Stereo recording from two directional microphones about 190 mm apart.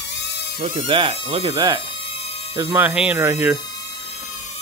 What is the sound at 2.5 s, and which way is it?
Speech, 10° right (ahead or behind).